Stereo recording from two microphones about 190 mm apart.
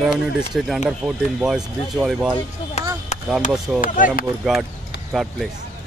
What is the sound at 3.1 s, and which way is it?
Chop, 35° left (ahead or behind).